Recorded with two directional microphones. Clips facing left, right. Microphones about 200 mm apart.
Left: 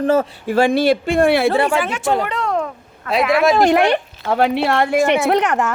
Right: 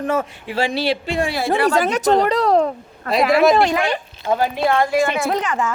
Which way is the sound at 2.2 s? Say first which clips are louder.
Right 5 dB; 35° right (ahead or behind).